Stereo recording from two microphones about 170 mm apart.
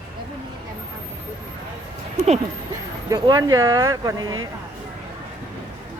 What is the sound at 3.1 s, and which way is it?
Speech, 20° right (ahead or behind).